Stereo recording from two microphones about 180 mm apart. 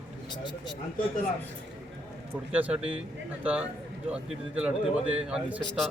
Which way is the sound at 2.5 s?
5° right (ahead or behind).